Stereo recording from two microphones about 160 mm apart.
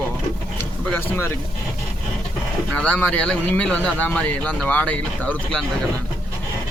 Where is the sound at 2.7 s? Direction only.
5° left (ahead or behind).